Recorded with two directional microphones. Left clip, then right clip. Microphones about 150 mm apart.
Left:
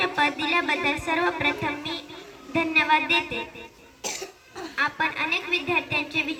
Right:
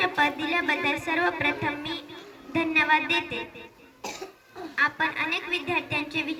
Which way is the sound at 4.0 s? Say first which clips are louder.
Left 4 dB; 55° right (ahead or behind).